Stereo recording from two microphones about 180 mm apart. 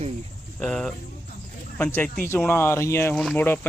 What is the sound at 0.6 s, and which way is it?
Speech, 5° left (ahead or behind).